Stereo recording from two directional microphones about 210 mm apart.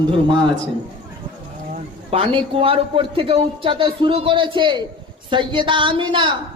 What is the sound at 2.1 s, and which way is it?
A man's voice, 25° right (ahead or behind).